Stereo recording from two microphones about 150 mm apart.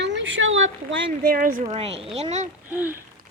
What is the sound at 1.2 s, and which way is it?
Speech, 70° right (ahead or behind).